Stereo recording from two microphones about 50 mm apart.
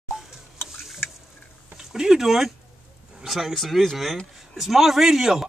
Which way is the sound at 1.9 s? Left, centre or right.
Centre.